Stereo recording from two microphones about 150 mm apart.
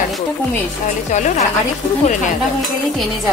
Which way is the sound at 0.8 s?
55° left (ahead or behind).